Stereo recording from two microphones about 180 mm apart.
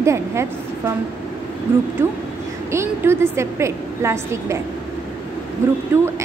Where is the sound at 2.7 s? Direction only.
15° right (ahead or behind).